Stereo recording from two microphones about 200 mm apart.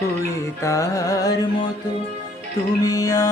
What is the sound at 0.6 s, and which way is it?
Music, 15° left (ahead or behind).